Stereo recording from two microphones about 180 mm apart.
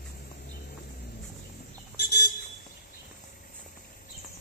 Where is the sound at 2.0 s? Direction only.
70° left (ahead or behind).